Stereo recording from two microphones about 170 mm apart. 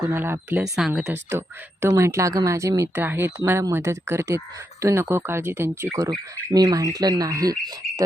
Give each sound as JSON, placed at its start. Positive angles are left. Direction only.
{"t": 0.1, "sound": "speech", "side_deg": -10}